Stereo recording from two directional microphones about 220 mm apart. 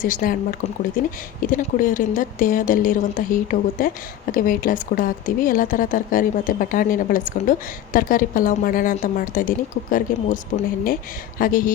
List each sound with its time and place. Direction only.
0.0 s speech: 40° left (ahead or behind)
1.4 s speech: 40° left (ahead or behind)
11.3 s speech: 40° left (ahead or behind)